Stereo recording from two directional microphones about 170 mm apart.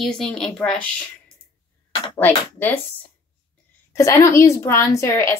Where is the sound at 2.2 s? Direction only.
10° left (ahead or behind).